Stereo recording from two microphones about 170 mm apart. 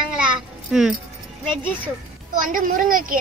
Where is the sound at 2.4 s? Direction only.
55° right (ahead or behind).